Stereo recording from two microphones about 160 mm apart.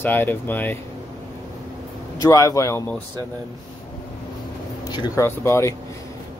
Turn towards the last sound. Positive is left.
turn(degrees=15)  # may be behind; listen again after turning